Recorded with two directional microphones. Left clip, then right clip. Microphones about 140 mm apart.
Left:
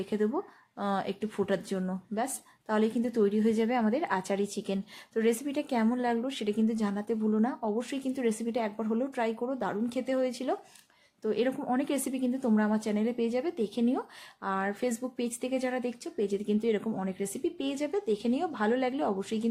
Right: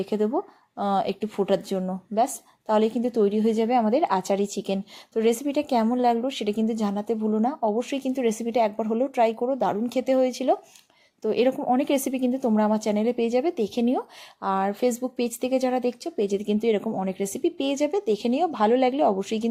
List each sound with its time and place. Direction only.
0.0 s a woman's voice: 30° right (ahead or behind)
7.2 s speech: 10° right (ahead or behind)
7.4 s a woman's voice: 25° right (ahead or behind)
11.5 s a woman's voice: 20° right (ahead or behind)
11.8 s speech: 35° right (ahead or behind)
16.8 s a woman's voice: 20° right (ahead or behind)
17.1 s speech: 35° right (ahead or behind)